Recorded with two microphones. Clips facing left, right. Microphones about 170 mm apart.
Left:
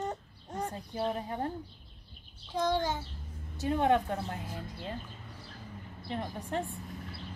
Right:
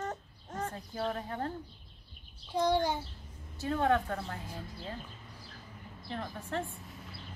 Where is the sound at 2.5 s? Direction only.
15° right (ahead or behind).